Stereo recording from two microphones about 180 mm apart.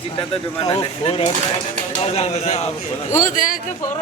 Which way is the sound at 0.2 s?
25° left (ahead or behind).